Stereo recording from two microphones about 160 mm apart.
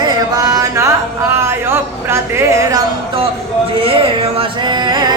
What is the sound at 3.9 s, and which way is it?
Speech, 35° right (ahead or behind).